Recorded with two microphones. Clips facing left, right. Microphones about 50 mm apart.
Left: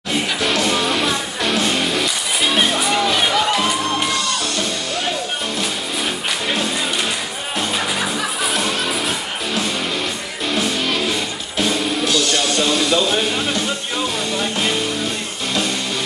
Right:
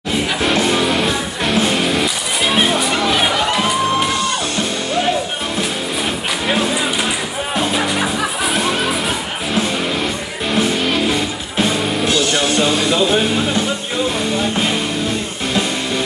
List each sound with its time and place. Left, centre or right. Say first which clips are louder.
2.4 s music: right 2 dB; centre
7.7 s music: right 3 dB; centre
12.1 s music: right 3 dB; centre